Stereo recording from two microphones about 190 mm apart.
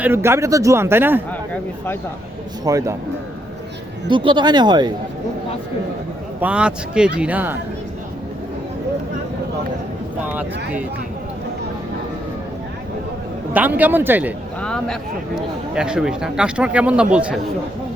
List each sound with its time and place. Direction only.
0.0 s a man's voice: 10° right (ahead or behind)
2.6 s a man's voice: 15° right (ahead or behind)
4.1 s speech: 25° right (ahead or behind)
6.4 s speech: 5° right (ahead or behind)
10.2 s a man's voice: 10° right (ahead or behind)
13.5 s a man's voice: 10° right (ahead or behind)
14.6 s speech: 5° left (ahead or behind)